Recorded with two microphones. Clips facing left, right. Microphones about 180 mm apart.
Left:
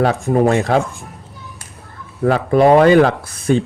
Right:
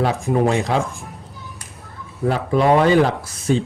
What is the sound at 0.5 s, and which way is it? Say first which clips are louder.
Speech: left 4 dB; 60° left (ahead or behind).